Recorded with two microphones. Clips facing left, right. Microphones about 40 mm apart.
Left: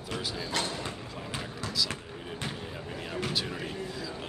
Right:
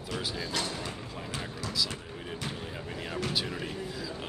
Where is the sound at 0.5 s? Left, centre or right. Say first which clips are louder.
Left 2 dB; left.